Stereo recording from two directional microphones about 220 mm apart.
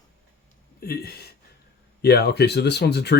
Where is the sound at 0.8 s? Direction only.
45° left (ahead or behind).